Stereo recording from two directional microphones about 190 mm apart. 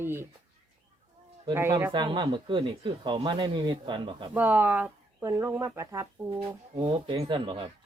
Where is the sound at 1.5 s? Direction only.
15° right (ahead or behind).